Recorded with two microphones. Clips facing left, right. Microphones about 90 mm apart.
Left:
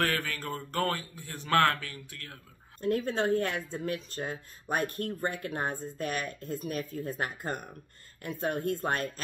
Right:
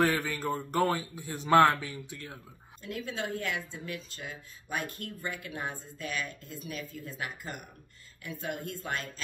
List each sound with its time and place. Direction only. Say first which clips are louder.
0.0 s speech: right 3 dB; 15° right (ahead or behind)
2.8 s speech: left 8 dB; 45° left (ahead or behind)